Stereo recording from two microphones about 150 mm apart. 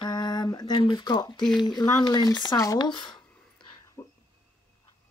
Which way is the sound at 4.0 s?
25° left (ahead or behind).